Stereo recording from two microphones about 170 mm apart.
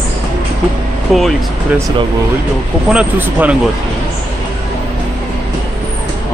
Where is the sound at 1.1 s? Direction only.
Centre (ahead or behind).